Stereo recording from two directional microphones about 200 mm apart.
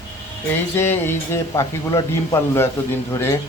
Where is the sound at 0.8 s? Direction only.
10° left (ahead or behind).